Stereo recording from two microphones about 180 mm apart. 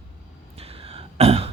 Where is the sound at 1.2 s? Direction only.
35° right (ahead or behind).